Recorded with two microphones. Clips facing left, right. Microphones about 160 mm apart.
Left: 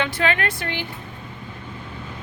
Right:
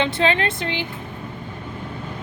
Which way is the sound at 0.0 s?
25° right (ahead or behind).